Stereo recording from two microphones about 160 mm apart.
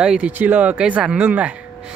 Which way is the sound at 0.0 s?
5° right (ahead or behind).